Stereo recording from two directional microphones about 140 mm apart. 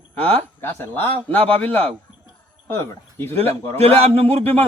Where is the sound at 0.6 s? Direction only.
15° left (ahead or behind).